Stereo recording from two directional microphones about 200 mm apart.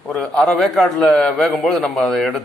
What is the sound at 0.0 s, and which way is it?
A man's voice, 5° left (ahead or behind).